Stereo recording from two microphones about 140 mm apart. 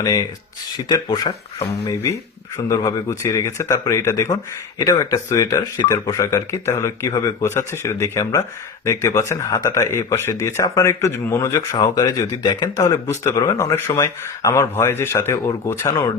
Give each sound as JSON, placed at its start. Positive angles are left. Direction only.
{"t": 0.0, "sound": "speech", "side_deg": 25}